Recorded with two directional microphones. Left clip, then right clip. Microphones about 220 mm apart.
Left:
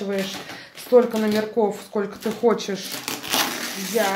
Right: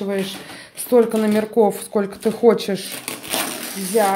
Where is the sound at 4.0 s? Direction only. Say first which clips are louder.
Right 5 dB; 40° right (ahead or behind).